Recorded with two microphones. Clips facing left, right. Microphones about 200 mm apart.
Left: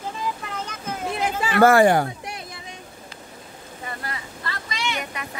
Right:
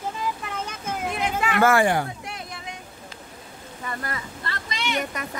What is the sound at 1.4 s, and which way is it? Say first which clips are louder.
Speech: left 5 dB; 35° left (ahead or behind).